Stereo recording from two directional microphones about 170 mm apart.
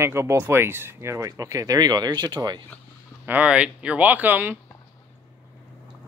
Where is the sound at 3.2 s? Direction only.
10° right (ahead or behind).